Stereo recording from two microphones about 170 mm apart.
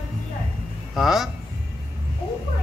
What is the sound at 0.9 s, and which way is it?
Speech, centre (ahead or behind).